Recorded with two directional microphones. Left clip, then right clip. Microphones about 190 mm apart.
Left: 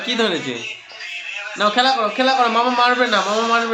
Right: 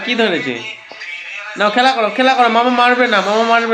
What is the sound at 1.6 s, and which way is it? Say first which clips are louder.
A man's voice: right 4 dB; 25° right (ahead or behind).